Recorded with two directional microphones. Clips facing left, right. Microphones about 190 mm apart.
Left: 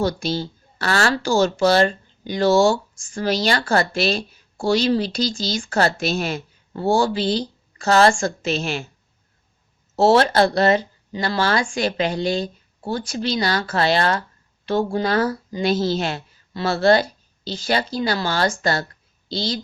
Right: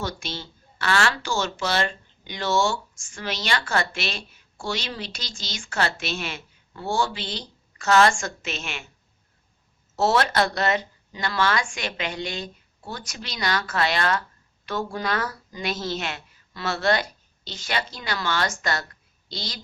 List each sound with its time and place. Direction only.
0.0 s speech: 35° left (ahead or behind)
9.9 s speech: 30° left (ahead or behind)